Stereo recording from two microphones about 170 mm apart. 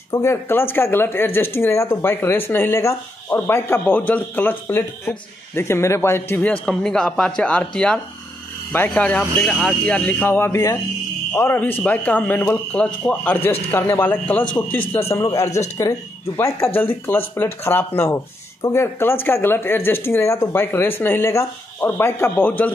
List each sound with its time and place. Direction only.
0.1 s a man's voice: 15° left (ahead or behind)